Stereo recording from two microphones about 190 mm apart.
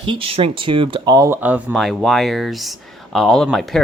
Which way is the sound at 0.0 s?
25° right (ahead or behind).